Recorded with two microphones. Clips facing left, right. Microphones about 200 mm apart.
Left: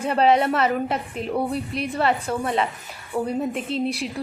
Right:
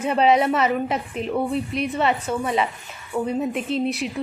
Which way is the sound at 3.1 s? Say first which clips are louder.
Right 1 dB; 15° left (ahead or behind).